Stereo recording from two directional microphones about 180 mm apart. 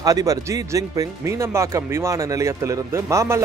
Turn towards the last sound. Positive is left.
turn(degrees=-15)  # may be behind; listen again after turning